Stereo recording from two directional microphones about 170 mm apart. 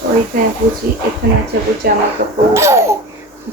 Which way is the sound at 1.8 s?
65° right (ahead or behind).